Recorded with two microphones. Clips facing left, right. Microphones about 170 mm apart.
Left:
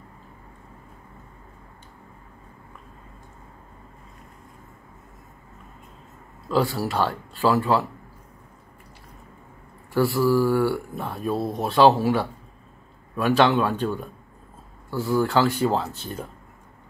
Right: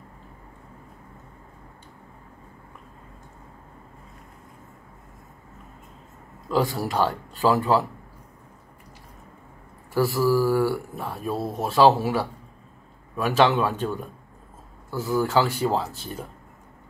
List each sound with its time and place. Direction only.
6.5 s speech: 15° right (ahead or behind)
9.9 s speech: 10° right (ahead or behind)